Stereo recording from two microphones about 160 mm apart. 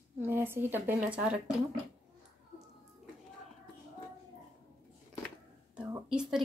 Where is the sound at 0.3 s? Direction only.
15° right (ahead or behind).